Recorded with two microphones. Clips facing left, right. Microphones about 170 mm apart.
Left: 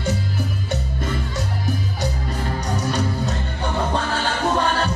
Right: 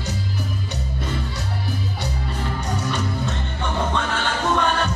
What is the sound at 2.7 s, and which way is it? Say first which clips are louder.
Music: left 3 dB; 40° left (ahead or behind).